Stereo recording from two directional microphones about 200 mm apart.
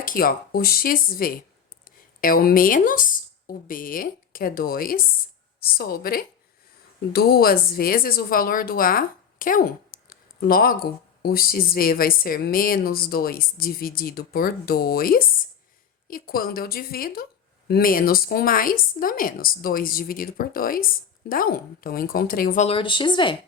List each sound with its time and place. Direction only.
0.0 s speech: 45° left (ahead or behind)
10.1 s a sound: 45° left (ahead or behind)
11.2 s speech: 50° left (ahead or behind)
22.6 s speech: 25° left (ahead or behind)